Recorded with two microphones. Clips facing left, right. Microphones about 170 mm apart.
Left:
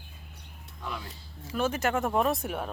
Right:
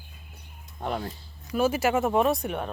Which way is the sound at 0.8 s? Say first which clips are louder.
Right 8 dB; 55° right (ahead or behind).